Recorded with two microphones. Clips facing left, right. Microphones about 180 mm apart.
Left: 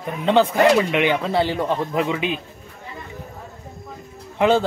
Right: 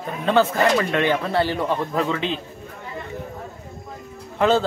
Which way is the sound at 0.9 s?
15° left (ahead or behind).